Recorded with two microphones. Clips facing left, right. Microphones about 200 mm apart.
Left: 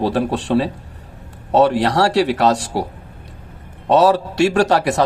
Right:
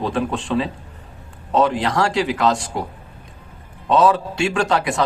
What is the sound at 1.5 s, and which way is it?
Speech, 40° left (ahead or behind).